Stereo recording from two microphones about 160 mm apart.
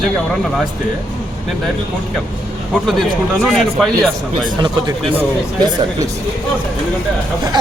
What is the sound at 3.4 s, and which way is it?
Speech, centre (ahead or behind).